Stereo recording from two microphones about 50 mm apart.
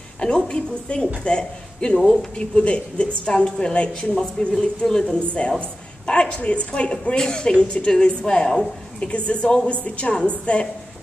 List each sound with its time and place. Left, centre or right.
0.2 s a woman's voice: centre
4.8 s a woman's voice: centre